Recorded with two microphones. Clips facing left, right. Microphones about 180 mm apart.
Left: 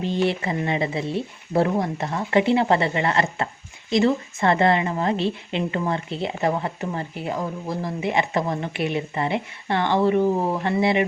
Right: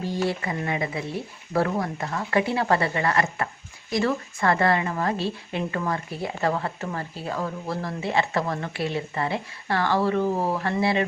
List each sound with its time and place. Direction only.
0.0 s a woman's voice: 25° left (ahead or behind)